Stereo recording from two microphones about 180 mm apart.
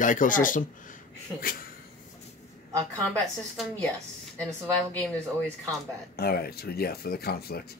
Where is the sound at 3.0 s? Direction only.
5° left (ahead or behind).